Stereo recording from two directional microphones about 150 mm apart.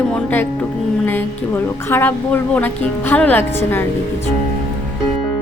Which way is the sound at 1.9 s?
10° left (ahead or behind).